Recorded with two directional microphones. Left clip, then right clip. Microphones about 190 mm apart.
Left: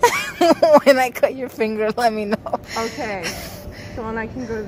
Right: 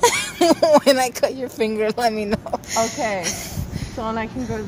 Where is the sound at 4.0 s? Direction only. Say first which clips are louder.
Right 2 dB; 40° right (ahead or behind).